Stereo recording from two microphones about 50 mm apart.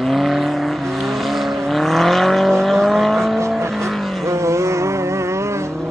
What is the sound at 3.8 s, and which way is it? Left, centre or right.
Vehicle, right.